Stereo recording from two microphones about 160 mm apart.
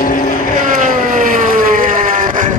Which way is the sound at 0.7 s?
55° right (ahead or behind).